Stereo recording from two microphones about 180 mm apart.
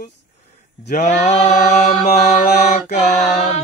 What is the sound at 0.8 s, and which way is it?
Mantra, 40° left (ahead or behind).